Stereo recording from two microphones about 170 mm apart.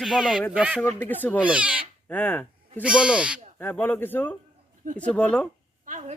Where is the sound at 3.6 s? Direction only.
10° left (ahead or behind).